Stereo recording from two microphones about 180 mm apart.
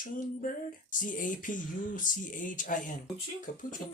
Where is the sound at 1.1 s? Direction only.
45° left (ahead or behind).